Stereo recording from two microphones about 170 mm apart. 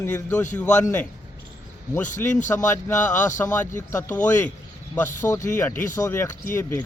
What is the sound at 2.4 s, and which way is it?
Speech, 15° left (ahead or behind).